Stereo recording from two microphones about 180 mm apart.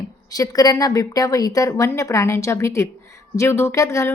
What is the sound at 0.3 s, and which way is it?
A woman's voice, 20° left (ahead or behind).